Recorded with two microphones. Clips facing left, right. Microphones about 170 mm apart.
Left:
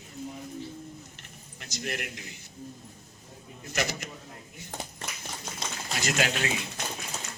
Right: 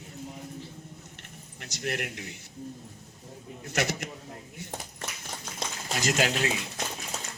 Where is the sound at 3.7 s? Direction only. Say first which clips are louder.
Right 2 dB; 70° right (ahead or behind).